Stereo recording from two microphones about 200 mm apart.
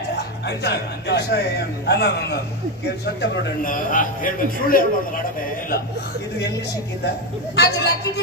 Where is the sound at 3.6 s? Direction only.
45° left (ahead or behind).